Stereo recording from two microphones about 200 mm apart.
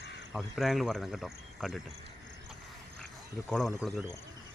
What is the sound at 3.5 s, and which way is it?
Speech, centre (ahead or behind).